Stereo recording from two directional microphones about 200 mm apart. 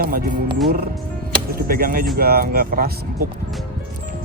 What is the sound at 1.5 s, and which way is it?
Speech, 45° right (ahead or behind).